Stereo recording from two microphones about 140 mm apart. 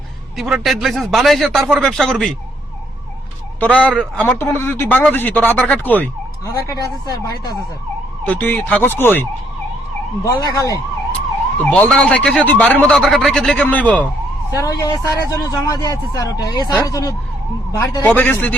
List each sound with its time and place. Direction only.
0.3 s speech: centre (ahead or behind)
3.6 s a man's voice: 10° left (ahead or behind)
6.4 s speech: 20° left (ahead or behind)
8.2 s a man's voice: 15° left (ahead or behind)
10.2 s speech: 25° left (ahead or behind)
11.6 s a man's voice: 10° left (ahead or behind)
14.5 s speech: 25° left (ahead or behind)
18.0 s a man's voice: 10° left (ahead or behind)